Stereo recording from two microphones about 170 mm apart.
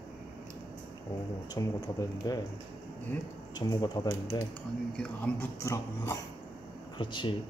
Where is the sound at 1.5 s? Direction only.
20° left (ahead or behind).